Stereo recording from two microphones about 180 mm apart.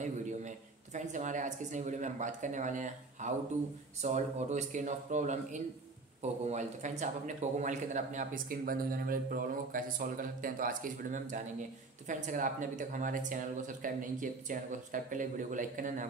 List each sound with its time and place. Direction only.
0.0 s a man's voice: 40° right (ahead or behind)